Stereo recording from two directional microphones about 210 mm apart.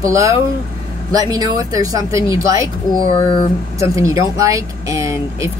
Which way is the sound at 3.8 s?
15° right (ahead or behind).